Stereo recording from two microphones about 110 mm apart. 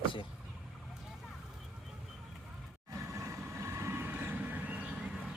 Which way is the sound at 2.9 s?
30° right (ahead or behind).